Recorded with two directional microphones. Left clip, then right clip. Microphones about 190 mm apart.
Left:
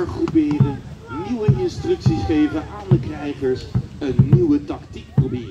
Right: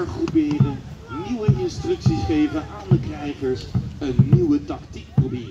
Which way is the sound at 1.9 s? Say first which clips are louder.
Left 2 dB; 25° right (ahead or behind).